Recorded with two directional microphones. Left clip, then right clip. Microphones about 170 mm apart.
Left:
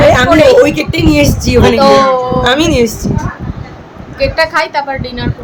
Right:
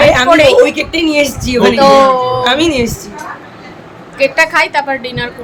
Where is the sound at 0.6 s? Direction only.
70° left (ahead or behind).